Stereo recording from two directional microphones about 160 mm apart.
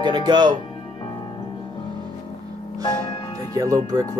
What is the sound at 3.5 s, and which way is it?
Speech, 20° right (ahead or behind).